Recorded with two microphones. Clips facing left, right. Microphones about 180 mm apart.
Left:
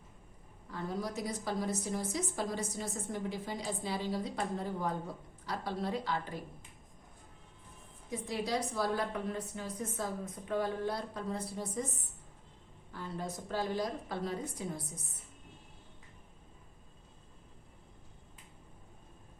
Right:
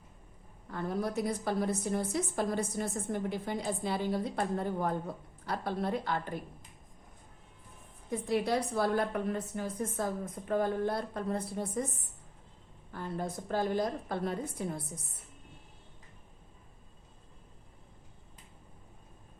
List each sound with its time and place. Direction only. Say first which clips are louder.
0.7 s a woman's voice: right 4 dB; 55° right (ahead or behind)
8.1 s a woman's voice: right 5 dB; 55° right (ahead or behind)
12.9 s a woman's voice: right 3 dB; 50° right (ahead or behind)